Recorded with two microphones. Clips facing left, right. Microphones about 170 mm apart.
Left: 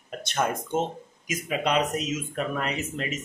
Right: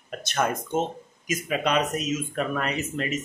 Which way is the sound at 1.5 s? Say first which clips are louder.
Even; 20° left (ahead or behind).